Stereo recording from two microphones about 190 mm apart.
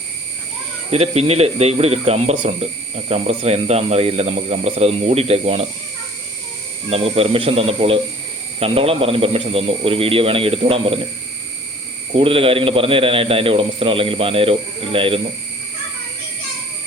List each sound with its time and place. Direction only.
0.9 s speech: 35° right (ahead or behind)
6.9 s a man's voice: 30° right (ahead or behind)
12.1 s a man's voice: 30° right (ahead or behind)